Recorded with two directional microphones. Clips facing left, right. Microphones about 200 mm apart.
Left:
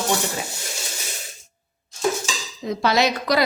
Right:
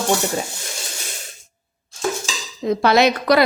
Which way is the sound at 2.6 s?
55° right (ahead or behind).